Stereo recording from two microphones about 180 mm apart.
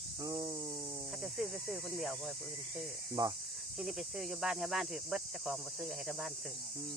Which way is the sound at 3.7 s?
Centre (ahead or behind).